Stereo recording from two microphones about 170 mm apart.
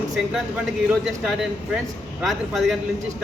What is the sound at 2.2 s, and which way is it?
Speech, centre (ahead or behind).